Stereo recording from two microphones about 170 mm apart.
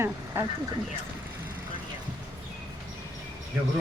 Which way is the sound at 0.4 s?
15° right (ahead or behind).